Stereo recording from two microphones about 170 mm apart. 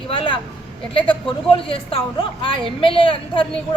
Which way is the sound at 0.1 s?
30° left (ahead or behind).